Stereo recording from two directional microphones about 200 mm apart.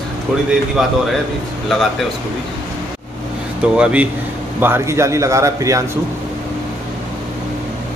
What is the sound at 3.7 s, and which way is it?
Speech, 5° right (ahead or behind).